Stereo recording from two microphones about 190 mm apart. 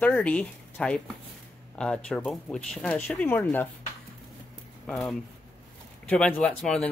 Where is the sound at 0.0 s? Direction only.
5° left (ahead or behind).